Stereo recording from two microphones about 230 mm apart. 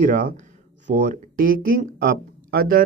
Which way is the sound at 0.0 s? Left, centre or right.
Right.